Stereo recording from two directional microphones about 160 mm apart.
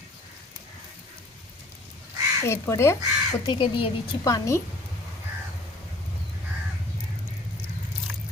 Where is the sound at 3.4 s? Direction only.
30° left (ahead or behind).